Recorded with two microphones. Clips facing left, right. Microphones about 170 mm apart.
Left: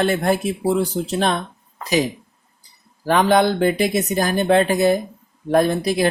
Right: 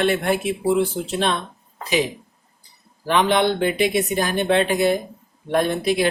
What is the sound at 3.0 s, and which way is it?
Speech, 45° left (ahead or behind).